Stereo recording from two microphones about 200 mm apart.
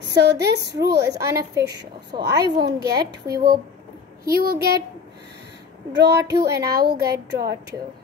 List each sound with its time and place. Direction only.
0.0 s a woman's voice: 60° right (ahead or behind)
1.3 s a woman's voice: 15° right (ahead or behind)
1.6 s a woman's voice: 55° right (ahead or behind)
5.9 s a woman's voice: 55° right (ahead or behind)